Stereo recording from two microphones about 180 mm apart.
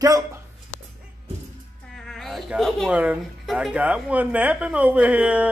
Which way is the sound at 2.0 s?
Centre (ahead or behind).